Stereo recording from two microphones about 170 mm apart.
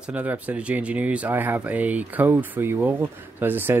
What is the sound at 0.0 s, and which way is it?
Speech, 10° right (ahead or behind).